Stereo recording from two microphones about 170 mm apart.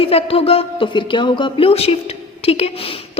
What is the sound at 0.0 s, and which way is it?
A woman's voice, 35° left (ahead or behind).